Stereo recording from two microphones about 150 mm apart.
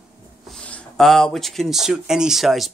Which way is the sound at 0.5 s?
5° left (ahead or behind).